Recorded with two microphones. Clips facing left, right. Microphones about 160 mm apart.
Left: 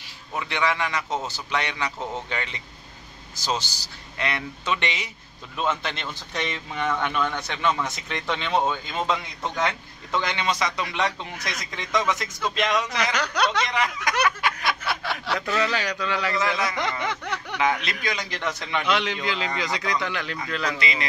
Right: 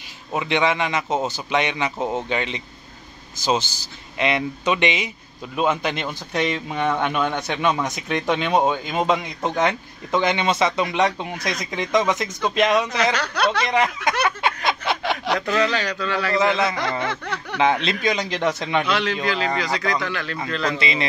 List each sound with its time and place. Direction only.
0.3 s a man's voice: 20° right (ahead or behind)
13.1 s a man's voice: 15° left (ahead or behind)
13.7 s a man's voice: 25° right (ahead or behind)
14.2 s a sound: 25° right (ahead or behind)
15.6 s a man's voice: 10° left (ahead or behind)
16.3 s a man's voice: 25° right (ahead or behind)
17.0 s a sound: 15° left (ahead or behind)
17.6 s a man's voice: 25° right (ahead or behind)
18.9 s a man's voice: 15° left (ahead or behind)
20.7 s a man's voice: 25° right (ahead or behind)